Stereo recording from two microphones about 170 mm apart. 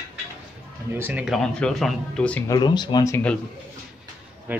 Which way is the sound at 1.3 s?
5° left (ahead or behind).